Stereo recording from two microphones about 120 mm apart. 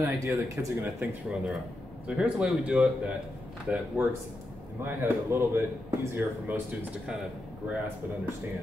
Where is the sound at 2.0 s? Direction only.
5° right (ahead or behind).